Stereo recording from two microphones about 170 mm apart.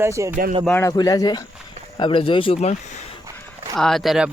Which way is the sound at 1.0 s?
20° left (ahead or behind).